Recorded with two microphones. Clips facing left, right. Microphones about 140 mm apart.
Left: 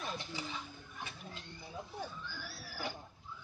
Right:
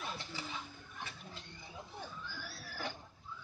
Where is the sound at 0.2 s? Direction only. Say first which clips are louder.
Left 2 dB; 15° left (ahead or behind).